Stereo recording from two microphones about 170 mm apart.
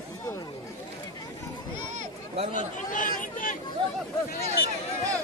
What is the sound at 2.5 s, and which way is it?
Speech, 50° left (ahead or behind).